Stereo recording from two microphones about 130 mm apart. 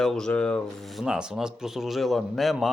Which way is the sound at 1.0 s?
5° right (ahead or behind).